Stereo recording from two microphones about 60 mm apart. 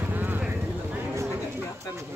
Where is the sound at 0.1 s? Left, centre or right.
Right.